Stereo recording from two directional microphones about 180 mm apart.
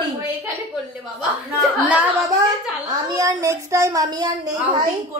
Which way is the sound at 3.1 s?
15° right (ahead or behind).